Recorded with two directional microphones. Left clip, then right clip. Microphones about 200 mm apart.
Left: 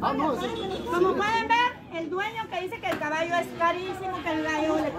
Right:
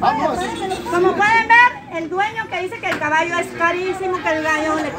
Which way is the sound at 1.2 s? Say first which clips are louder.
Right 12 dB; 15° right (ahead or behind).